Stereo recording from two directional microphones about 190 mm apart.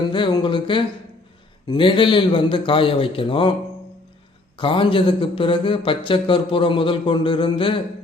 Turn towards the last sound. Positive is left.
turn(degrees=25)  # may be behind; listen again after turning